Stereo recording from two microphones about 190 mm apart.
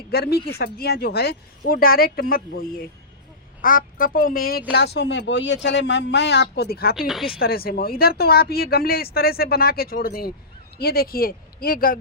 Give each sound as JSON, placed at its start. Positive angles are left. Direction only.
{"t": 0.1, "sound": "a man's voice", "side_deg": 55}
{"t": 4.7, "sound": "a man's voice", "side_deg": 60}